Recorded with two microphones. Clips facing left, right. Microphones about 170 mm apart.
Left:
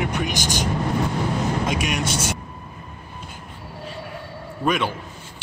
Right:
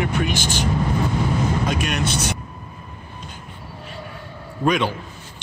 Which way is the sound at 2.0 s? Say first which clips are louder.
Right 1 dB; 60° right (ahead or behind).